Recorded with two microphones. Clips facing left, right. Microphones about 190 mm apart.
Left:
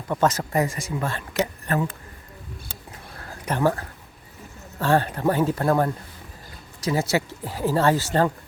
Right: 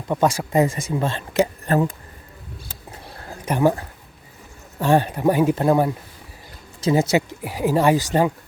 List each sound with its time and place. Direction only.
0.1 s speech: 15° right (ahead or behind)
0.6 s speech: 25° right (ahead or behind)
3.4 s speech: 15° right (ahead or behind)